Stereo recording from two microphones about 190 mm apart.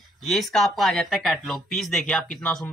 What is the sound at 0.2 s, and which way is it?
Speech, centre (ahead or behind).